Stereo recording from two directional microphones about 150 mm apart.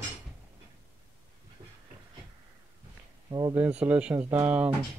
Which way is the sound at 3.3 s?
25° right (ahead or behind).